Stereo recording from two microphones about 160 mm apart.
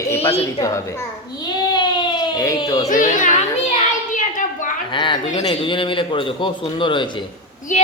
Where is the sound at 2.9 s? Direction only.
55° left (ahead or behind).